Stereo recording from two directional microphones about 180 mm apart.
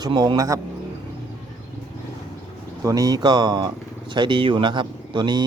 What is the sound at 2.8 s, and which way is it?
Speech, 20° right (ahead or behind).